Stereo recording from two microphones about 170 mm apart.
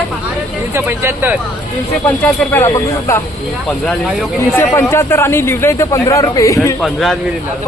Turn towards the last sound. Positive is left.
turn(degrees=0)  # may be behind; listen again after turning